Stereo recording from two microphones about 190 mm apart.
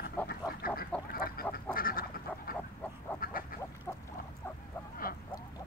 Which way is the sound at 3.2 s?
50° left (ahead or behind).